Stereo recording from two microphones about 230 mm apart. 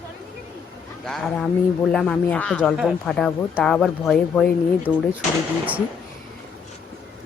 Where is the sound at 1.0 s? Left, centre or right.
Centre.